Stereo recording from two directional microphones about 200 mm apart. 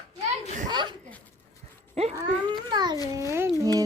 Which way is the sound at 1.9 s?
35° right (ahead or behind).